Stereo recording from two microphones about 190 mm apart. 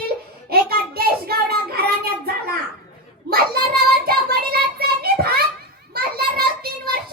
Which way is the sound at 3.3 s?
55° right (ahead or behind).